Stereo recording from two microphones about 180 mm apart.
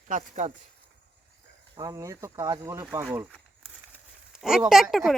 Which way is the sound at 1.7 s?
20° right (ahead or behind).